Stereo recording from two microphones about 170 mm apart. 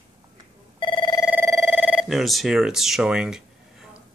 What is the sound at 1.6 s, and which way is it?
Telephone bell ringing, 5° right (ahead or behind).